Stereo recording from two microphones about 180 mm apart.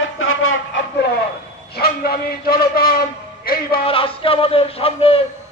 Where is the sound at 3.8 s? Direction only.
30° left (ahead or behind).